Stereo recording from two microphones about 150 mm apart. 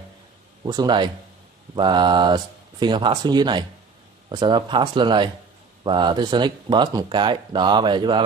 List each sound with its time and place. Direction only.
0.7 s speech: 30° right (ahead or behind)